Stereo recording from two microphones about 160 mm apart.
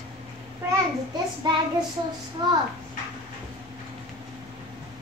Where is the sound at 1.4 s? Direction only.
25° right (ahead or behind).